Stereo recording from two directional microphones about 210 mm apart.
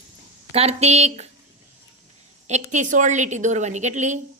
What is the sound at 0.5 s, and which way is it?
Speech, 30° right (ahead or behind).